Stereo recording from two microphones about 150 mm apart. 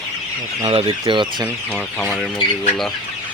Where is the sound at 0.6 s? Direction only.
40° right (ahead or behind).